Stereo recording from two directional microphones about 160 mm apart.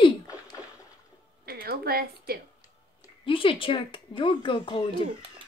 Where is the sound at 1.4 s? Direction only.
70° right (ahead or behind).